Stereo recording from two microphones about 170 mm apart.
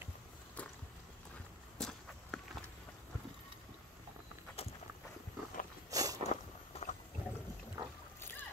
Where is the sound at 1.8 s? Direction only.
Centre (ahead or behind).